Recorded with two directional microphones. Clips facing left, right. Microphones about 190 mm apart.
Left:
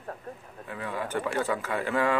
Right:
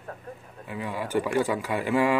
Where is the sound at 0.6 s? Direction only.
15° right (ahead or behind).